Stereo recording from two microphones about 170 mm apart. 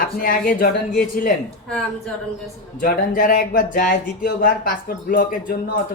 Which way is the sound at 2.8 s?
60° left (ahead or behind).